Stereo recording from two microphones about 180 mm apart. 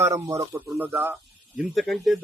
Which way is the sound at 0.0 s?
15° right (ahead or behind).